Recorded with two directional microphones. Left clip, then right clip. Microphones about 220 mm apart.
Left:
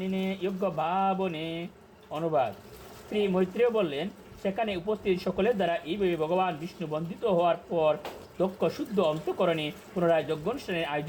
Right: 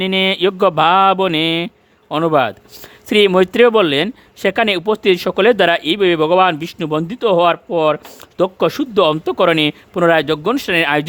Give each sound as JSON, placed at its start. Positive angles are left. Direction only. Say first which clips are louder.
{"t": 0.0, "sound": "speech", "louder": "right 18 dB", "side_deg": -55}